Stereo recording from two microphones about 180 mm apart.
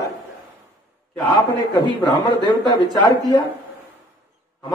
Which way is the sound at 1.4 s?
20° left (ahead or behind).